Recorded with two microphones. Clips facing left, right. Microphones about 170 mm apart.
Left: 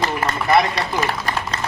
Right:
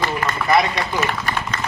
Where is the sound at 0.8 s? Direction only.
35° left (ahead or behind).